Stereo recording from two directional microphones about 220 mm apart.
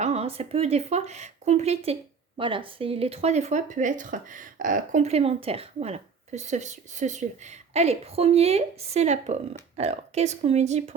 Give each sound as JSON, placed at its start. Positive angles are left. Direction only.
{"t": 0.0, "sound": "a woman's voice", "side_deg": -30}